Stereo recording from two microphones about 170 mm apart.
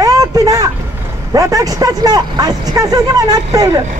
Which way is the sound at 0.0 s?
20° right (ahead or behind).